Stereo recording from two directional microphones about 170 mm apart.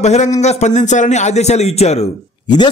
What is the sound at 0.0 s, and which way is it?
A man's voice, 40° left (ahead or behind).